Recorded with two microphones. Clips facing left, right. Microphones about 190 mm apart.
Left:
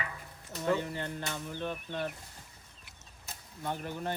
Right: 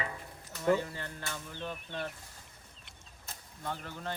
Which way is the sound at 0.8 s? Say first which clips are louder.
Left 3 dB; 20° left (ahead or behind).